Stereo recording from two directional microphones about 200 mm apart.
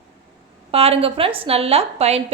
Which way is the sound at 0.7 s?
30° right (ahead or behind).